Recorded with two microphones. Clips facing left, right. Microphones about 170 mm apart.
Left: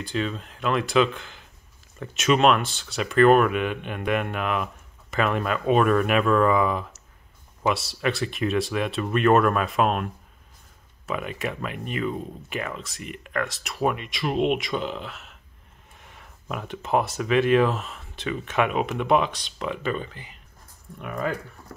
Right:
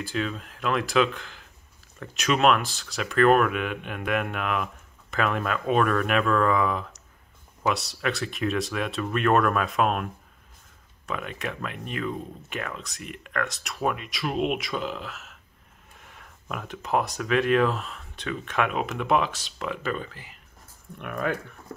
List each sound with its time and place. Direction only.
0.0 s speech: centre (ahead or behind)
11.1 s speech: 5° left (ahead or behind)